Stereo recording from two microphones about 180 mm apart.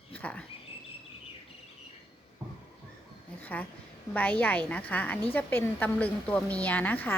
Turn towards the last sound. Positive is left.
turn(degrees=10)  # may be behind; listen again after turning